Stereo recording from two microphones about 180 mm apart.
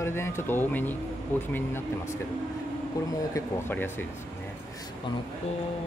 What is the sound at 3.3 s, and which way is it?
Speech, 10° left (ahead or behind).